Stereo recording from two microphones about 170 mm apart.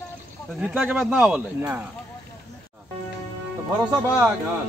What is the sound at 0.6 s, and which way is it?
Speech, 10° right (ahead or behind).